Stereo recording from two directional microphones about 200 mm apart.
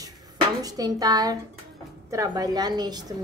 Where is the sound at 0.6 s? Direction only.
20° right (ahead or behind).